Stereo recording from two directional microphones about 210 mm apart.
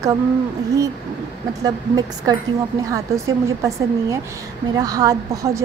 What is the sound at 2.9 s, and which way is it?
A woman's voice, 15° right (ahead or behind).